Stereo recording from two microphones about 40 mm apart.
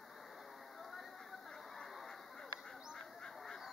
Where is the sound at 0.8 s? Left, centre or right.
Centre.